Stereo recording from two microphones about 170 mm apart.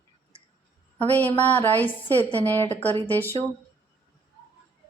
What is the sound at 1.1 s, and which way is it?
A woman's voice, 10° left (ahead or behind).